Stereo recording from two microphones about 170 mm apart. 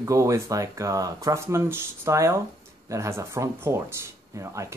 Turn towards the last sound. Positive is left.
turn(degrees=-15)  # may be behind; listen again after turning